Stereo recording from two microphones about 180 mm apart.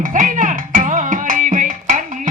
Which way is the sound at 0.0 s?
45° right (ahead or behind).